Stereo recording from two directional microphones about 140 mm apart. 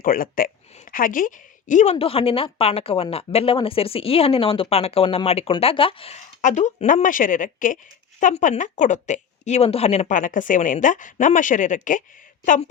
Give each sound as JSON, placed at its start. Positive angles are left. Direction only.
{"t": 0.0, "sound": "a woman's voice", "side_deg": 90}